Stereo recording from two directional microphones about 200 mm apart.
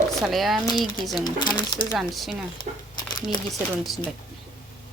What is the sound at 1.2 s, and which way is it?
Speech, 20° left (ahead or behind).